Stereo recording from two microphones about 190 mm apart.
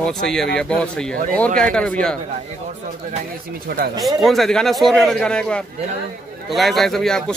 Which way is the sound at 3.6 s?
55° right (ahead or behind).